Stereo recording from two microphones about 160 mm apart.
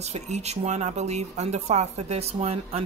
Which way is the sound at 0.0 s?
45° right (ahead or behind).